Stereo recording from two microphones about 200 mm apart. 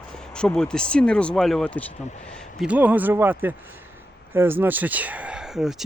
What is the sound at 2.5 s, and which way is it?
Speech, 5° right (ahead or behind).